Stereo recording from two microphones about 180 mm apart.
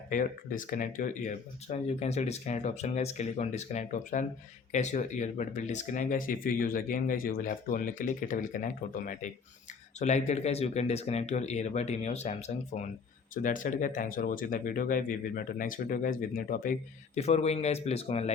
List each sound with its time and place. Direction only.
0.1 s speech: 45° left (ahead or behind)
17.2 s speech: 35° left (ahead or behind)